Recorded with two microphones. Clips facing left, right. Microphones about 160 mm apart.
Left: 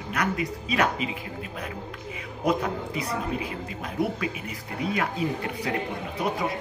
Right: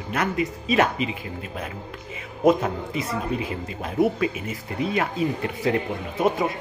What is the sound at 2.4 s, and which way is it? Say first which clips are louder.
A woman's voice: right 6 dB; 25° right (ahead or behind).